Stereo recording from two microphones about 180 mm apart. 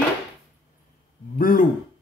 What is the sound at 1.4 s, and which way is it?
Speech, 50° left (ahead or behind).